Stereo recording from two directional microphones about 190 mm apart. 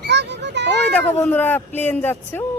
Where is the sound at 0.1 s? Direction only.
65° right (ahead or behind).